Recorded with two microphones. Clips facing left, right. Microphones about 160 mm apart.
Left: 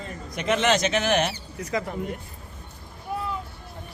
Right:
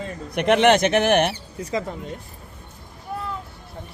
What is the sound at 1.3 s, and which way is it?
Speech, 30° right (ahead or behind).